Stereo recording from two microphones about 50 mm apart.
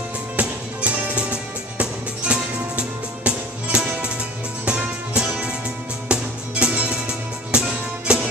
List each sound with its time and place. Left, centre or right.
0.4 s music: right